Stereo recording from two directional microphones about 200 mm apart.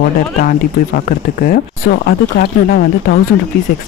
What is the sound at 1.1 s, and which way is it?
Speech, 45° left (ahead or behind).